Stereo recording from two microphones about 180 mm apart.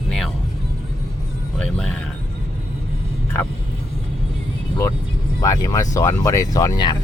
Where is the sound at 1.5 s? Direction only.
5° left (ahead or behind).